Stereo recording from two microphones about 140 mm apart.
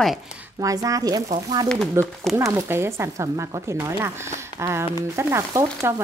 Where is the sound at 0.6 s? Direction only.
25° right (ahead or behind).